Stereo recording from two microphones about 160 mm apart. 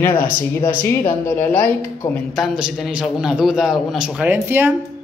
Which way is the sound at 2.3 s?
5° right (ahead or behind).